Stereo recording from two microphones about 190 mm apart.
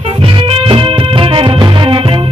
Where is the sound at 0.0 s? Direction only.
30° right (ahead or behind).